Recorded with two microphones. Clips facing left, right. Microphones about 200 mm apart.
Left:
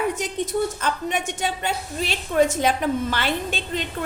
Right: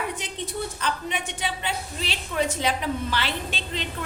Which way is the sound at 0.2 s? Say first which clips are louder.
Left 8 dB; 45° left (ahead or behind).